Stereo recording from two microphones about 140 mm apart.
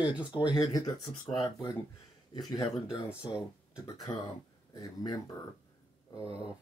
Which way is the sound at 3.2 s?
5° right (ahead or behind).